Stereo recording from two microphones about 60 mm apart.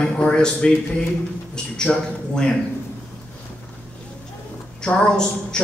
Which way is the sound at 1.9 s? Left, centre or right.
Centre.